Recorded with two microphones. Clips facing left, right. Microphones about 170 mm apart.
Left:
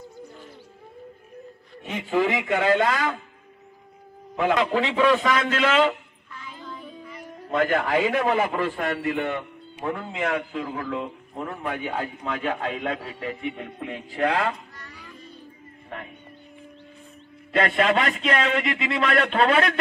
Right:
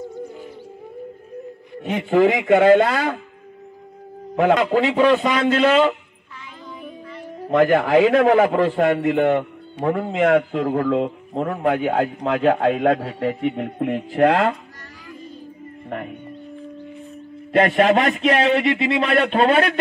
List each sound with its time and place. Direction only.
1.8 s a man's voice: 60° right (ahead or behind)
4.7 s a man's voice: 35° right (ahead or behind)
7.4 s a man's voice: 60° right (ahead or behind)
17.6 s a man's voice: 45° right (ahead or behind)